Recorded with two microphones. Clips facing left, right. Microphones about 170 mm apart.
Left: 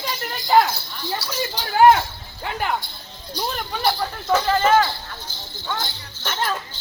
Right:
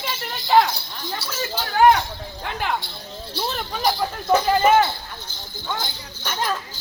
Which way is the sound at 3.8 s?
10° right (ahead or behind).